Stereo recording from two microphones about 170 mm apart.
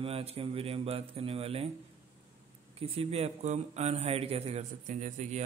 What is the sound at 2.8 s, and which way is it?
A man's voice, 35° right (ahead or behind).